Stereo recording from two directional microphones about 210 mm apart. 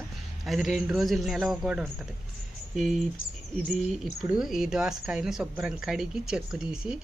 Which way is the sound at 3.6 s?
Centre (ahead or behind).